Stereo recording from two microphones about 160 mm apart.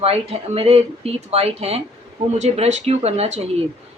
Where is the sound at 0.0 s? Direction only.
35° right (ahead or behind).